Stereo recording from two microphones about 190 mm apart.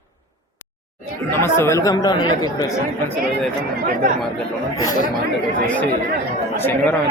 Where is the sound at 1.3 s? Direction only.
15° left (ahead or behind).